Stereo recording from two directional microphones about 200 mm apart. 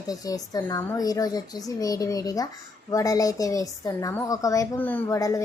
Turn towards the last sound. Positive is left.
turn(degrees=15)  # may be behind; listen again after turning